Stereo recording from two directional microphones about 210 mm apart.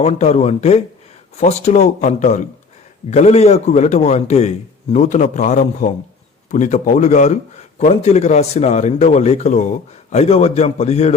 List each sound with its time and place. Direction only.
0.0 s a man's voice: 30° left (ahead or behind)